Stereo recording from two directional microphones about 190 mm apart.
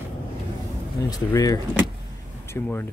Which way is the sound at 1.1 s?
20° left (ahead or behind).